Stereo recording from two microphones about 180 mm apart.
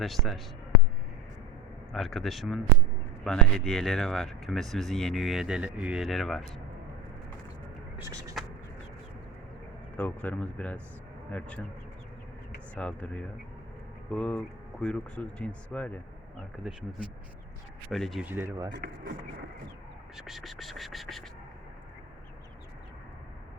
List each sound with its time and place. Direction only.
0.0 s speech: centre (ahead or behind)
1.9 s speech: centre (ahead or behind)
7.9 s a sound: 15° right (ahead or behind)
10.0 s speech: 10° left (ahead or behind)
12.7 s speech: 5° left (ahead or behind)
17.8 s speech: centre (ahead or behind)
18.3 s a sound: 10° right (ahead or behind)
18.7 s speech: 75° right (ahead or behind)
20.1 s speech: centre (ahead or behind)